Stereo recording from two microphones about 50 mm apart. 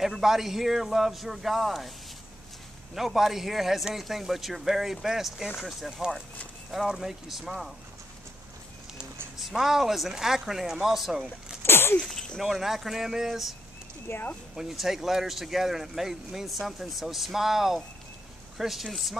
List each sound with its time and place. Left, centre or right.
0.2 s speech: centre
2.9 s speech: centre
9.4 s speech: centre
11.6 s sneeze: left
12.0 s speech: centre
12.4 s speech: centre